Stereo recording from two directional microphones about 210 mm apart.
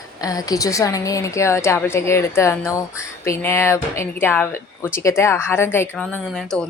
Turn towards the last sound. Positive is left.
turn(degrees=5)  # may be behind; listen again after turning